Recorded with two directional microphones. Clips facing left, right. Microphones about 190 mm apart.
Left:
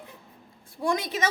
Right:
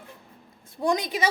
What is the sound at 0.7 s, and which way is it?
Speech, 20° right (ahead or behind).